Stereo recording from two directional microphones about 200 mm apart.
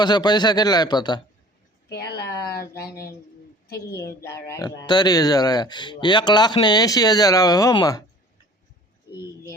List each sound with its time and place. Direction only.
0.0 s speech: 20° left (ahead or behind)
1.9 s speech: 55° left (ahead or behind)
2.2 s speech: 15° left (ahead or behind)
2.6 s speech: 50° left (ahead or behind)
2.9 s speech: 15° left (ahead or behind)